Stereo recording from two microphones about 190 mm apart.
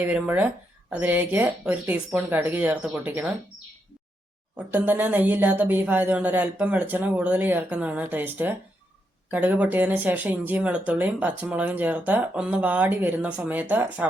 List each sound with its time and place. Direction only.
0.0 s speech: 10° right (ahead or behind)
4.5 s speech: 10° right (ahead or behind)